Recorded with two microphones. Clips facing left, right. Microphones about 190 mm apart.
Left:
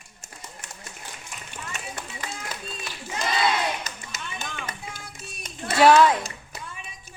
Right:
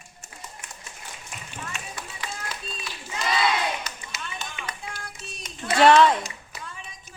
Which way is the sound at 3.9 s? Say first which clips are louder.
Even; 50° left (ahead or behind).